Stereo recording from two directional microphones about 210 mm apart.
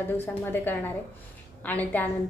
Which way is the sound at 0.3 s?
10° left (ahead or behind).